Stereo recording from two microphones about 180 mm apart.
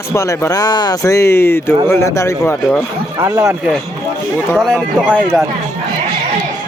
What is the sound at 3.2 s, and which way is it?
Speech, 15° right (ahead or behind).